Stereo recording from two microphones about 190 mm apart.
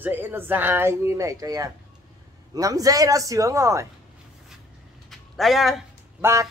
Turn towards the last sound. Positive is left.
turn(degrees=-15)  # may be behind; listen again after turning